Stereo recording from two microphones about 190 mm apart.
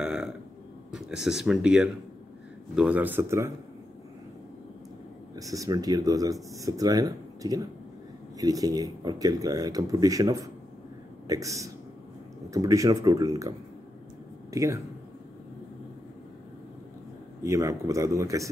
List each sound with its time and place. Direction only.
0.0 s burping: 5° right (ahead or behind)
0.9 s speech: centre (ahead or behind)
5.3 s speech: 20° right (ahead or behind)
14.5 s speech: 15° right (ahead or behind)
17.4 s speech: 15° right (ahead or behind)